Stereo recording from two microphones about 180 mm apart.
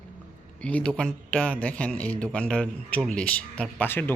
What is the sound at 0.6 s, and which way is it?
A man's voice, 5° left (ahead or behind).